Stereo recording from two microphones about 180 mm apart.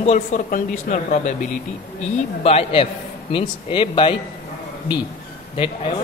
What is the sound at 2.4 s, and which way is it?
A man's voice, 35° left (ahead or behind).